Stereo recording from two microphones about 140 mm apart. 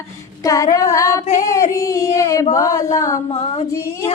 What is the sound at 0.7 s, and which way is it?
Singing, 25° left (ahead or behind).